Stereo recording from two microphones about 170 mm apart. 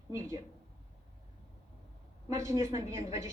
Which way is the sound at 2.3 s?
20° right (ahead or behind).